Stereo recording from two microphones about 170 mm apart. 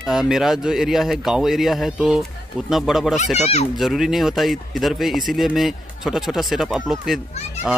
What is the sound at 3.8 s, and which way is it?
Speech, centre (ahead or behind).